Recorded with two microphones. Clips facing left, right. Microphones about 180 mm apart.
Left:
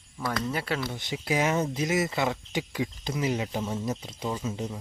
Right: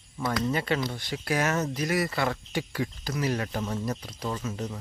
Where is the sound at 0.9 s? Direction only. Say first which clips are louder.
Even; 15° left (ahead or behind).